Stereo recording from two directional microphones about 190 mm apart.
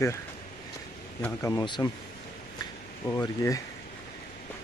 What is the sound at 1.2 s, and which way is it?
Speech, 15° left (ahead or behind).